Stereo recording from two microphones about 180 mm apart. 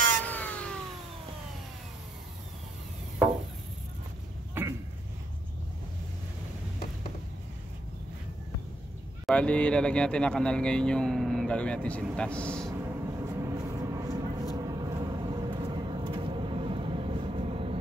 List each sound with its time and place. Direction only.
0.2 s cat: 10° left (ahead or behind)
4.6 s a sound: 10° right (ahead or behind)
9.2 s speech: 5° left (ahead or behind)
12.7 s vehicle: 15° right (ahead or behind); by 17.7 s 30° right (ahead or behind)